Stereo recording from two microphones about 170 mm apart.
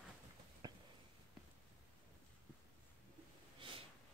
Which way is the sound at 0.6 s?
25° right (ahead or behind).